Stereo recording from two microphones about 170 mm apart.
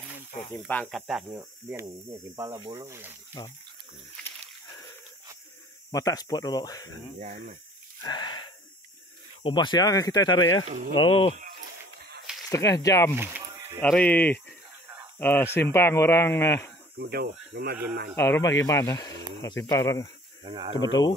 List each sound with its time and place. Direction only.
0.5 s speech: 5° left (ahead or behind)
1.3 s speech: 15° right (ahead or behind)
5.9 s speech: 20° left (ahead or behind)
7.2 s speech: 45° right (ahead or behind)
8.0 s wheeze: 25° left (ahead or behind)
9.4 s speech: 25° left (ahead or behind)
11.0 s speech: 35° left (ahead or behind)
12.4 s speech: 20° left (ahead or behind)
13.1 s a sound: 15° right (ahead or behind)
13.7 s speech: 5° left (ahead or behind)
17.0 s speech: 65° right (ahead or behind)
18.1 s speech: 15° left (ahead or behind)
20.4 s speech: 30° right (ahead or behind)
20.7 s speech: 25° left (ahead or behind)